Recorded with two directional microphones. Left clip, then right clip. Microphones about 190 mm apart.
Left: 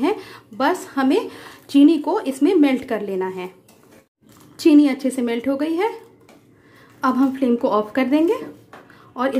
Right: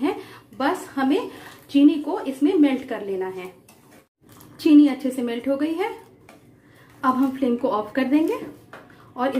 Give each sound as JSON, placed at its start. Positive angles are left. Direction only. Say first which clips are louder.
{"t": 0.0, "sound": "a sound", "louder": "left 4 dB", "side_deg": 35}
{"t": 1.7, "sound": "a woman's voice", "louder": "left 4 dB", "side_deg": 40}
{"t": 4.6, "sound": "a woman's voice", "louder": "left 1 dB", "side_deg": 35}
{"t": 7.0, "sound": "a woman's voice", "louder": "left 2 dB", "side_deg": 30}